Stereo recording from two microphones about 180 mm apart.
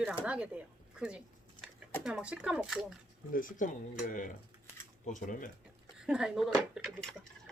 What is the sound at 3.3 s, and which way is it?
Speech, 45° left (ahead or behind).